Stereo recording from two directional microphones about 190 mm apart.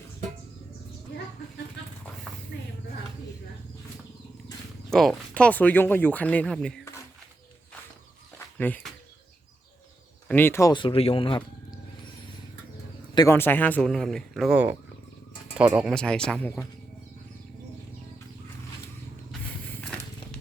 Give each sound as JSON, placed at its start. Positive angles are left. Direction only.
{"t": 4.9, "sound": "speech", "side_deg": 0}
{"t": 8.5, "sound": "speech", "side_deg": 10}
{"t": 10.2, "sound": "speech", "side_deg": 10}
{"t": 13.1, "sound": "speech", "side_deg": 15}
{"t": 15.9, "sound": "speech", "side_deg": 5}
{"t": 19.3, "sound": "a sound", "side_deg": 5}